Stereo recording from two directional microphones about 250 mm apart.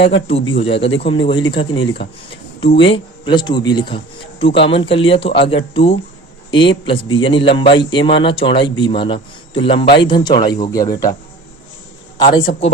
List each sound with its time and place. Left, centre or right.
0.3 s a man's voice: left
2.8 s a man's voice: centre
12.2 s a man's voice: centre